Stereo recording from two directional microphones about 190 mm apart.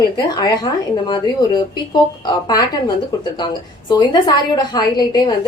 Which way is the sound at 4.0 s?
25° left (ahead or behind).